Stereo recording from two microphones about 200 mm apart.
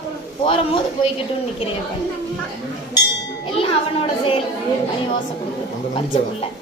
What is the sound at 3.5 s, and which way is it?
Speech, 30° left (ahead or behind).